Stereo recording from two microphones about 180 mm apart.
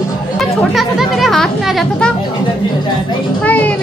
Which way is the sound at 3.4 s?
10° left (ahead or behind).